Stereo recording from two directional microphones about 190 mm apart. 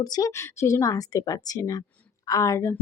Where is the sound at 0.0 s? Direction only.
20° left (ahead or behind).